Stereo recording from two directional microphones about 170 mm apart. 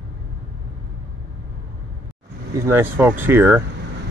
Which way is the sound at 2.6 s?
15° right (ahead or behind).